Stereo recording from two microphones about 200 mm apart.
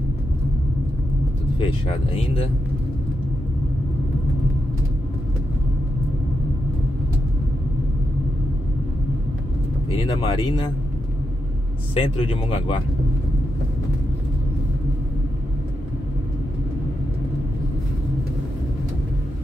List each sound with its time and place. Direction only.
1.6 s speech: 25° left (ahead or behind)
9.8 s speech: 30° left (ahead or behind)
11.9 s speech: 30° left (ahead or behind)